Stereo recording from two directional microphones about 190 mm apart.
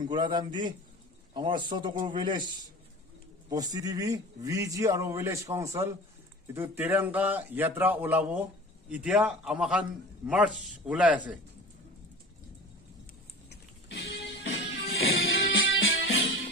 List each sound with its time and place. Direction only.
0.0 s a man's voice: 20° right (ahead or behind); by 11.1 s 5° right (ahead or behind)
13.5 s music: 60° left (ahead or behind)